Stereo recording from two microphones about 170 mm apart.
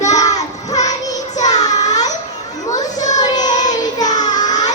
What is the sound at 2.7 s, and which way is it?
Children playing, 20° left (ahead or behind).